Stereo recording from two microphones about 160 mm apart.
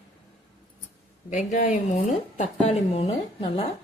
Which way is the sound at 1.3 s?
50° left (ahead or behind).